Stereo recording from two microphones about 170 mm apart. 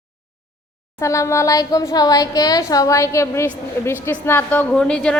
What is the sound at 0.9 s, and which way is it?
A woman's voice, 20° left (ahead or behind).